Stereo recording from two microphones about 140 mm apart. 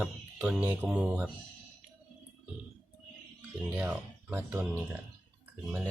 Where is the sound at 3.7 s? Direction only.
10° right (ahead or behind).